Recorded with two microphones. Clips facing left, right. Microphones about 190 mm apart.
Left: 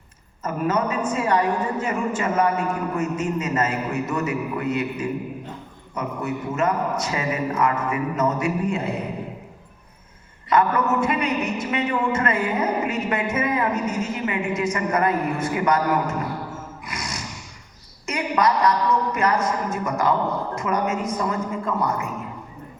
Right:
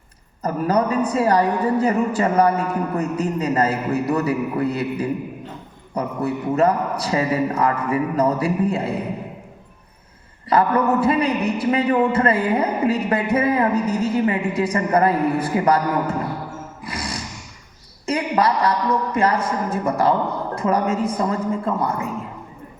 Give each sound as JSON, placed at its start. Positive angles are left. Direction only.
{"t": 0.4, "sound": "a man's voice", "side_deg": -35}
{"t": 10.5, "sound": "a man's voice", "side_deg": -35}
{"t": 16.8, "sound": "music", "side_deg": -30}
{"t": 18.0, "sound": "a man's voice", "side_deg": -30}